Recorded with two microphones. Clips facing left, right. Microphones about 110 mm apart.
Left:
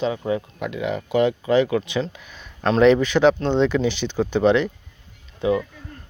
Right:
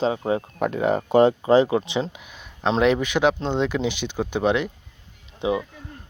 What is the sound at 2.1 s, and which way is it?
Speech, 10° right (ahead or behind).